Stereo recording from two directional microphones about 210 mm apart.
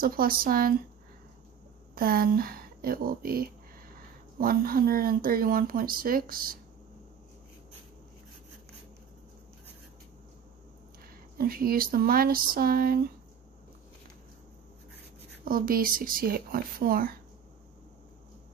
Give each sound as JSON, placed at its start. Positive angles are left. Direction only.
{"t": 0.0, "sound": "speech", "side_deg": -45}
{"t": 2.0, "sound": "speech", "side_deg": -45}
{"t": 11.3, "sound": "speech", "side_deg": -45}
{"t": 15.4, "sound": "speech", "side_deg": -45}